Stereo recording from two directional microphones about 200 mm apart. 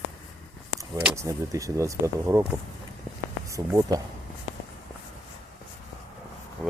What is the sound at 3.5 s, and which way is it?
Speech, 15° right (ahead or behind).